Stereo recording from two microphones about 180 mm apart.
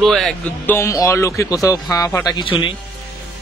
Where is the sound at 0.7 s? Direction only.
15° left (ahead or behind).